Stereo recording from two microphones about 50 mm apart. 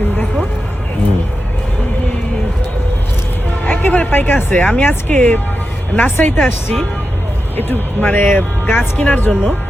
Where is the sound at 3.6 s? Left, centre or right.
Left.